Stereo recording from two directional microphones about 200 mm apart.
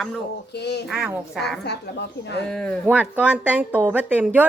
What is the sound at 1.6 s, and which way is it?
Speech, 55° left (ahead or behind).